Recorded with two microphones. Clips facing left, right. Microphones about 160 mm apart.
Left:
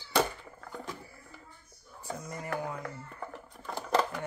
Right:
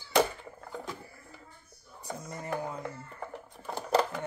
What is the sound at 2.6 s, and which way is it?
Speech, 20° right (ahead or behind).